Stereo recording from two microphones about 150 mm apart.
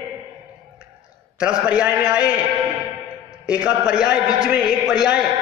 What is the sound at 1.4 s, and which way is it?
Speech, 5° right (ahead or behind).